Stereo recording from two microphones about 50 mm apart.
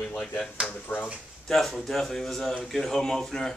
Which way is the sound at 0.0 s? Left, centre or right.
Centre.